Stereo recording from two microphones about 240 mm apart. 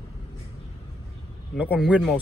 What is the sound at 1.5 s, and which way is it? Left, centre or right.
Speech, centre.